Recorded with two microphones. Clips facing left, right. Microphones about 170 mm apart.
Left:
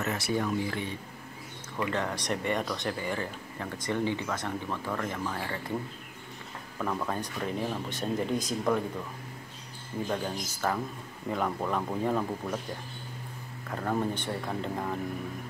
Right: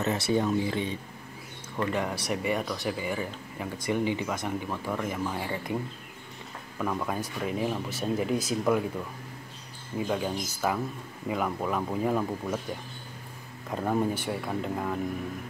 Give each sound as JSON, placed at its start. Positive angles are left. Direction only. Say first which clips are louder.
{"t": 0.0, "sound": "speech", "louder": "right 4 dB", "side_deg": -25}
{"t": 1.9, "sound": "speech", "louder": "right 1 dB", "side_deg": -10}
{"t": 6.8, "sound": "speech", "louder": "right 1 dB", "side_deg": -5}
{"t": 9.9, "sound": "speech", "louder": "right 3 dB", "side_deg": -10}
{"t": 13.7, "sound": "speech", "louder": "right 3 dB", "side_deg": -15}